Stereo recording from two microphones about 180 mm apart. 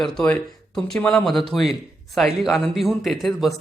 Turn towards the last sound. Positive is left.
turn(degrees=0)  # may be behind; listen again after turning